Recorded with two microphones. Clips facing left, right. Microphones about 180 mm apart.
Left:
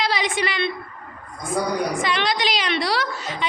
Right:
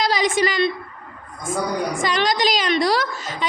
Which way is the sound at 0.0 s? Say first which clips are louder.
Right 4 dB; 45° right (ahead or behind).